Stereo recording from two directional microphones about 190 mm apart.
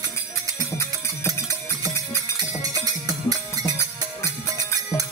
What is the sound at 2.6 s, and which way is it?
Music, 20° right (ahead or behind).